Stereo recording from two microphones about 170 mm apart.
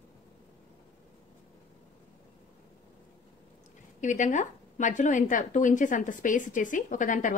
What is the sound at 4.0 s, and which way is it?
Speech, 45° left (ahead or behind).